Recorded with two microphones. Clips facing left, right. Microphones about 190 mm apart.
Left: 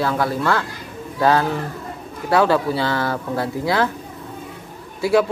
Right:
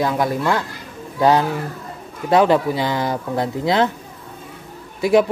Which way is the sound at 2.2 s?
20° right (ahead or behind).